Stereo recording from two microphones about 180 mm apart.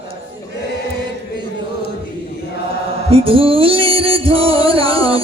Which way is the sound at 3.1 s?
30° right (ahead or behind).